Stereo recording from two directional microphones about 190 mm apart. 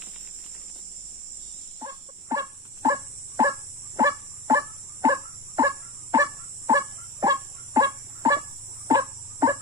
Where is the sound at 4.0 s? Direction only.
20° right (ahead or behind).